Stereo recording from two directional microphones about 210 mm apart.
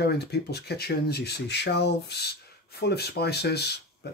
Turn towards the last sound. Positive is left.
turn(degrees=50)  # may be behind; listen again after turning